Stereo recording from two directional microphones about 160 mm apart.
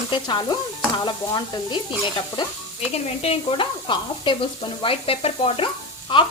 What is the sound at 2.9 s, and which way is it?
Stir, 40° left (ahead or behind).